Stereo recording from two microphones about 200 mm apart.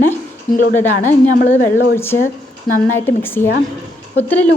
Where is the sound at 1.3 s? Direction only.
40° left (ahead or behind).